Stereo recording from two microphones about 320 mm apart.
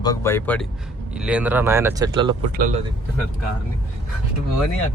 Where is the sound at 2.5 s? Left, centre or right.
Right.